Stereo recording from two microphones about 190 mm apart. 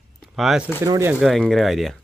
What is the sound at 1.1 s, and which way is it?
Speech, centre (ahead or behind).